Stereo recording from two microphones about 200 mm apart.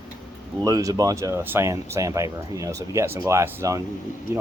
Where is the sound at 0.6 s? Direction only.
20° right (ahead or behind).